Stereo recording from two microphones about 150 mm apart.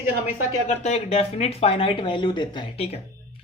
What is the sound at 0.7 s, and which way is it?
Speech, 45° left (ahead or behind).